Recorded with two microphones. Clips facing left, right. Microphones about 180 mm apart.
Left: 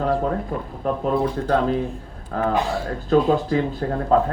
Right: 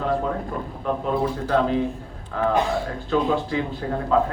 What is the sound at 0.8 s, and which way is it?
Speech, 40° left (ahead or behind).